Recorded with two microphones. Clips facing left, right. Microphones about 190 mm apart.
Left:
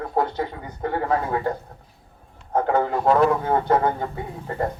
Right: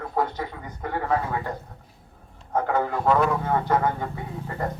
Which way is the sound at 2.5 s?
30° left (ahead or behind).